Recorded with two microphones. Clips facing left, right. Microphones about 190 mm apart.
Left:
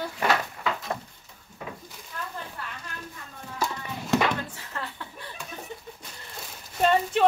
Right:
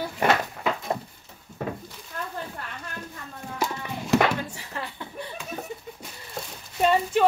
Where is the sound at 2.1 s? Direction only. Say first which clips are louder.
Right 2 dB; 45° right (ahead or behind).